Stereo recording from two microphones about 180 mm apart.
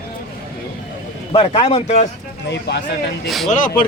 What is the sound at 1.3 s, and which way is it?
Speech, 30° left (ahead or behind).